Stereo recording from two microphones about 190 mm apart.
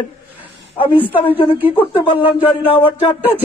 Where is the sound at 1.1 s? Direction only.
25° left (ahead or behind).